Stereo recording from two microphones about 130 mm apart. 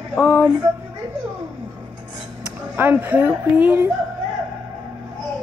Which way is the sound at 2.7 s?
15° right (ahead or behind).